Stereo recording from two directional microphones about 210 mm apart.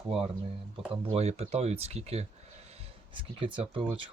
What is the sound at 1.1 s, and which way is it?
Speech, 30° right (ahead or behind).